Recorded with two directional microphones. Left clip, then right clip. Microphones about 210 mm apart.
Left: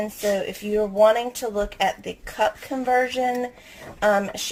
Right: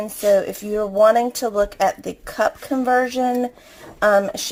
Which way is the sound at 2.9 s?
25° right (ahead or behind).